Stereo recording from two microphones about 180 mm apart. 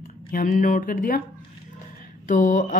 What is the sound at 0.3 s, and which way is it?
Speech, 50° left (ahead or behind).